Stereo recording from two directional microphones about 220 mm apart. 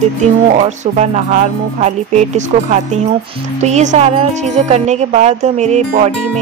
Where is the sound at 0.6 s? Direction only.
30° right (ahead or behind).